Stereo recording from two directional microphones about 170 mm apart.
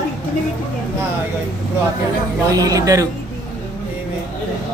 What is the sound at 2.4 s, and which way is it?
Speech, 20° right (ahead or behind).